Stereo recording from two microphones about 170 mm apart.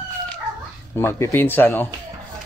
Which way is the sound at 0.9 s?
15° left (ahead or behind).